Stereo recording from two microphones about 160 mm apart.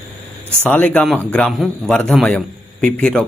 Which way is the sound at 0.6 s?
10° left (ahead or behind).